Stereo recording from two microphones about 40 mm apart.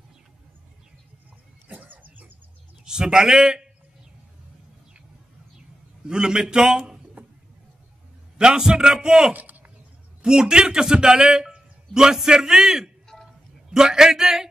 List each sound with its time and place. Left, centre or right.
1.7 s cough: right
2.8 s a man's voice: centre
6.0 s a man's voice: right
8.4 s a man's voice: centre
9.3 s a sound: right
10.2 s a man's voice: centre
13.0 s throat clearing: centre
13.7 s a man's voice: centre